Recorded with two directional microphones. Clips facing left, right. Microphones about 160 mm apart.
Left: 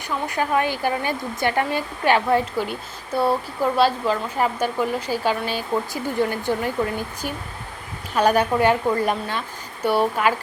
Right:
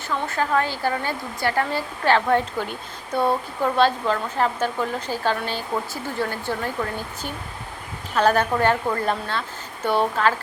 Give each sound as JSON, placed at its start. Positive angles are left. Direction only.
{"t": 0.1, "sound": "a woman's voice", "side_deg": 15}
{"t": 2.2, "sound": "a woman's voice", "side_deg": 5}
{"t": 8.1, "sound": "a woman's voice", "side_deg": 10}